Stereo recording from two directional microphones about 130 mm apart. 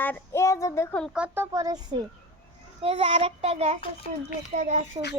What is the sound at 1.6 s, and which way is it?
Speech, 30° right (ahead or behind).